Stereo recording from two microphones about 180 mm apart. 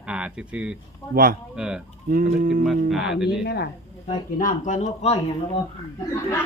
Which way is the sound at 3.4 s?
65° left (ahead or behind).